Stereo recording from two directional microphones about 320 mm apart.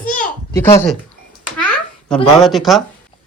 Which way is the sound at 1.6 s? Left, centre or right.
Centre.